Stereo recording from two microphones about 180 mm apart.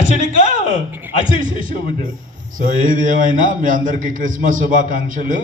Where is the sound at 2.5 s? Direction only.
45° right (ahead or behind).